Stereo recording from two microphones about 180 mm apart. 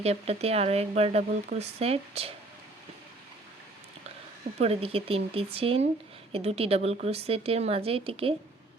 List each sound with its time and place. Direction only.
0.0 s speech: 35° right (ahead or behind)
4.5 s speech: 35° right (ahead or behind)